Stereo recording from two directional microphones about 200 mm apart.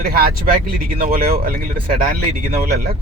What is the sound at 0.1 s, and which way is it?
Speech, 50° right (ahead or behind).